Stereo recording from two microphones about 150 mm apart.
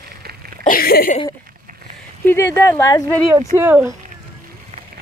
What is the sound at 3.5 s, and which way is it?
Speech, 15° right (ahead or behind).